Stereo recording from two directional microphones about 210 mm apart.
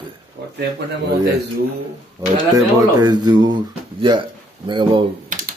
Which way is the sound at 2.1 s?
20° right (ahead or behind).